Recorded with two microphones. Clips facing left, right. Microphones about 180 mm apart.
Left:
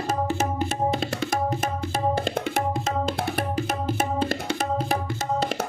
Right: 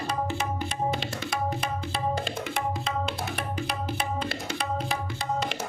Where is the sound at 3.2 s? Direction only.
40° left (ahead or behind).